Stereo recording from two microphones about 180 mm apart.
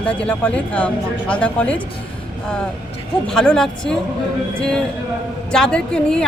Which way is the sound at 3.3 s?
5° left (ahead or behind).